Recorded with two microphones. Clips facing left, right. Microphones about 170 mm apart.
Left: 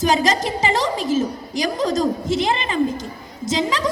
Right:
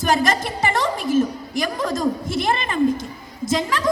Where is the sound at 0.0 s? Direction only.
55° right (ahead or behind).